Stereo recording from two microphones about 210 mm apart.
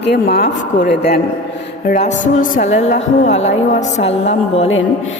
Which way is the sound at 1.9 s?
35° left (ahead or behind).